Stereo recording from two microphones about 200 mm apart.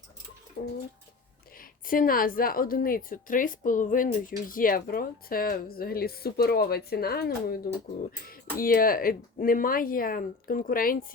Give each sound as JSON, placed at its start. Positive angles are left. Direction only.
{"t": 0.6, "sound": "a woman's voice", "side_deg": 50}
{"t": 1.9, "sound": "a woman's voice", "side_deg": 45}